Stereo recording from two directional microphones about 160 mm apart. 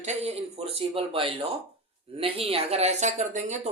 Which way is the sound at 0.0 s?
45° right (ahead or behind).